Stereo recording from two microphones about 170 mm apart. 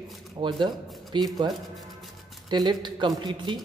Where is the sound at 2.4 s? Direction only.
25° right (ahead or behind).